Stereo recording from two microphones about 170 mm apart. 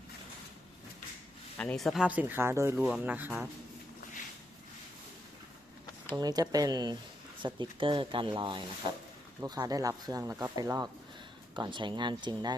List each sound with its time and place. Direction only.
1.5 s speech: 5° left (ahead or behind); by 3.5 s 10° right (ahead or behind)
6.1 s speech: 20° right (ahead or behind)